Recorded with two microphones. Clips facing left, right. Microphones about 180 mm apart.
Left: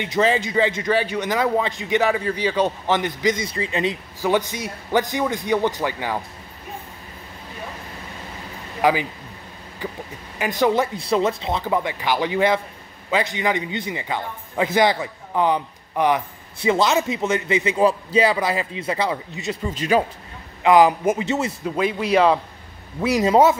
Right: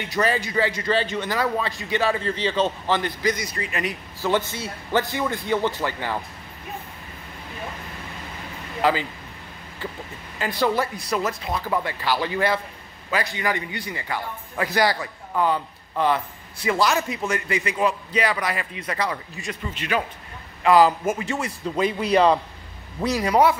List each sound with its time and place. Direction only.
0.0 s a man's voice: 20° left (ahead or behind)
4.2 s a man's voice: 15° left (ahead or behind)
8.8 s a man's voice: 15° left (ahead or behind)
10.4 s a man's voice: 20° left (ahead or behind)
19.7 s speech: 35° left (ahead or behind)
20.6 s a man's voice: 20° left (ahead or behind)
21.6 s speech: centre (ahead or behind)
23.1 s a man's voice: 25° left (ahead or behind)